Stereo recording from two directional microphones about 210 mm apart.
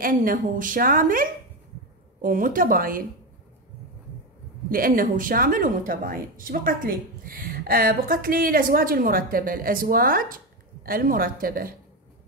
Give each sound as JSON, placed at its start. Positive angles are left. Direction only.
{"t": 0.0, "sound": "a woman's voice", "side_deg": -40}
{"t": 4.6, "sound": "speech", "side_deg": -45}